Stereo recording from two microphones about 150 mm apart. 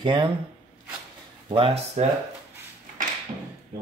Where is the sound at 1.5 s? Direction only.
40° right (ahead or behind).